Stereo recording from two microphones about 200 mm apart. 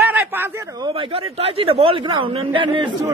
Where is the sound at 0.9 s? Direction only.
30° right (ahead or behind).